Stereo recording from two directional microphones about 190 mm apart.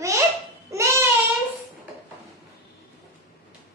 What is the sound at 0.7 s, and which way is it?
Baby cry, 15° right (ahead or behind).